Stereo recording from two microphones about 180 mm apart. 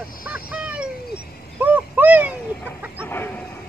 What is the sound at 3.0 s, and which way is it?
Chicken, 10° left (ahead or behind).